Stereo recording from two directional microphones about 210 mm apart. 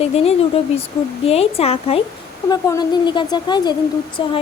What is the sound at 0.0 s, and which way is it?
Speech, 30° left (ahead or behind).